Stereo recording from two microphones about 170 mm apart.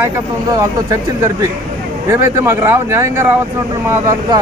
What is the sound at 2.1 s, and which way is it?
Speech, 15° right (ahead or behind).